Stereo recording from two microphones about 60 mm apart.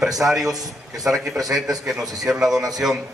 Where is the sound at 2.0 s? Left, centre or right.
Right.